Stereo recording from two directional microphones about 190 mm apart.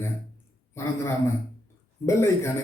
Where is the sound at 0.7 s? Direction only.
15° left (ahead or behind).